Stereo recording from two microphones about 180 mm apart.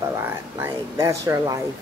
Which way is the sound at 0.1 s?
15° right (ahead or behind).